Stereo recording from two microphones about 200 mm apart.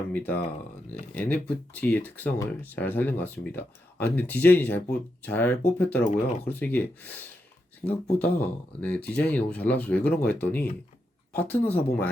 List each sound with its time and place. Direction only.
0.1 s speech: 10° left (ahead or behind)
7.8 s speech: 35° left (ahead or behind)
8.4 s speech: 5° left (ahead or behind)